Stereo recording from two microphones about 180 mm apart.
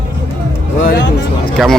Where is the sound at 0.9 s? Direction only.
75° left (ahead or behind).